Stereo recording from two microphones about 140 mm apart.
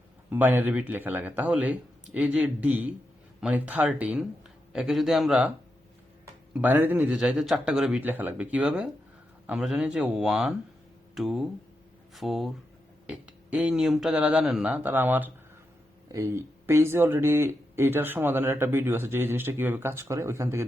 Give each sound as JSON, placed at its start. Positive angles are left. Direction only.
{"t": 0.3, "sound": "speech", "side_deg": -15}
{"t": 6.5, "sound": "speech", "side_deg": -15}